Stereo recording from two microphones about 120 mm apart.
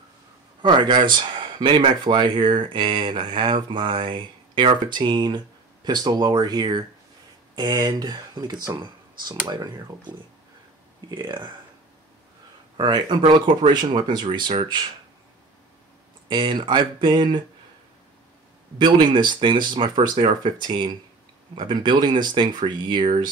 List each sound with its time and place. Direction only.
0.6 s speech: 40° right (ahead or behind)
11.1 s speech: 40° right (ahead or behind)
12.7 s speech: 40° right (ahead or behind)
16.3 s speech: 40° right (ahead or behind)
18.8 s speech: 40° right (ahead or behind)